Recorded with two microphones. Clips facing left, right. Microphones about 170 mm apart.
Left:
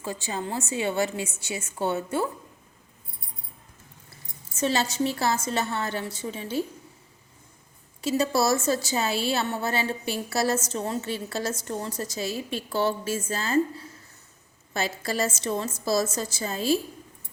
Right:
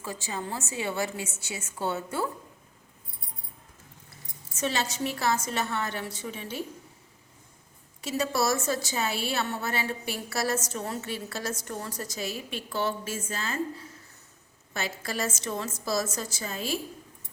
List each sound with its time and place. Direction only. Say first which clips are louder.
0.0 s a woman's voice: left 3 dB; 30° left (ahead or behind)
4.5 s a woman's voice: left 5 dB; 30° left (ahead or behind)
8.0 s a woman's voice: left 4 dB; 30° left (ahead or behind)